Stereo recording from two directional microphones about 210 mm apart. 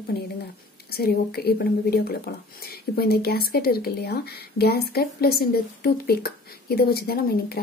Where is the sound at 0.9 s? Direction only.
50° left (ahead or behind).